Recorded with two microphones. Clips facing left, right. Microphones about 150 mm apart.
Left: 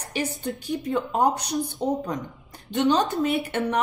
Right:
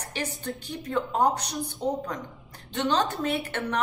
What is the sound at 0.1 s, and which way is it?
Speech, 15° left (ahead or behind).